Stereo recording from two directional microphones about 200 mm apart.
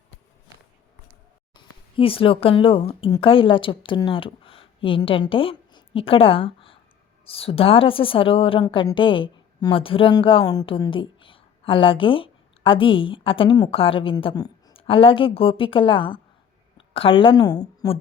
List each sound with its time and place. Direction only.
1.5 s a woman's voice: 25° left (ahead or behind)